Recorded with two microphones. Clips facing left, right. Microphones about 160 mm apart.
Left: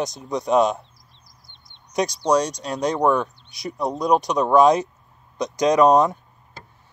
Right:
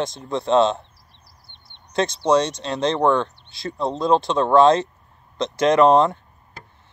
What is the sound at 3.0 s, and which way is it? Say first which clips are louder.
Speech: right 1 dB; 10° left (ahead or behind).